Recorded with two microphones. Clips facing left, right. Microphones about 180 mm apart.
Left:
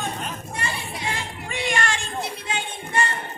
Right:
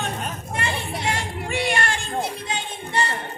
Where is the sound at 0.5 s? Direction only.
70° right (ahead or behind).